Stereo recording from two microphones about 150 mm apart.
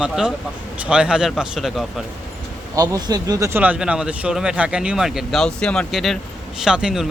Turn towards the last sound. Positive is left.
turn(degrees=-5)  # may be behind; listen again after turning